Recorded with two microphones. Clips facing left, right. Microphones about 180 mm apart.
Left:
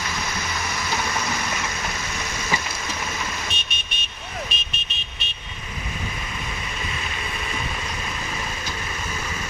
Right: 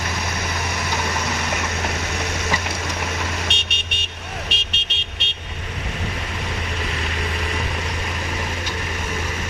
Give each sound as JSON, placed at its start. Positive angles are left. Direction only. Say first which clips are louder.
{"t": 1.5, "sound": "vehicle", "louder": "right 4 dB", "side_deg": -70}